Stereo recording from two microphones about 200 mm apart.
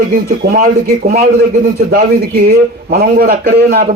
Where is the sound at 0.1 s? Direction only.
45° right (ahead or behind).